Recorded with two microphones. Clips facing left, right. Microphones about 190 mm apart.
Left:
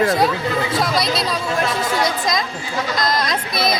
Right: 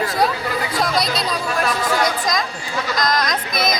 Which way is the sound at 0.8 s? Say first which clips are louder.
Left 1 dB; centre (ahead or behind).